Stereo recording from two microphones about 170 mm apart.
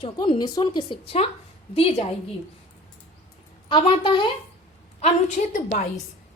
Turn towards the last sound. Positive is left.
turn(degrees=45)  # may be behind; listen again after turning